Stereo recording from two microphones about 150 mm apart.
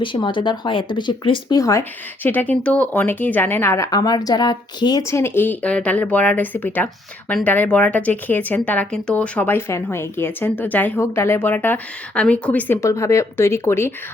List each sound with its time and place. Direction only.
0.0 s speech: 35° left (ahead or behind)
2.2 s a woman's voice: 10° left (ahead or behind)